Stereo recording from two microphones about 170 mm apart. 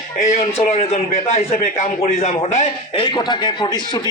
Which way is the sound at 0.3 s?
40° left (ahead or behind).